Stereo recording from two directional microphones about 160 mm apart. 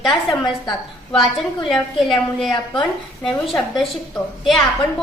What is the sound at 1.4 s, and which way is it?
A woman's voice, centre (ahead or behind).